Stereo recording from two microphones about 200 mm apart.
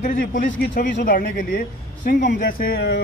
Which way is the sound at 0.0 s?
40° left (ahead or behind).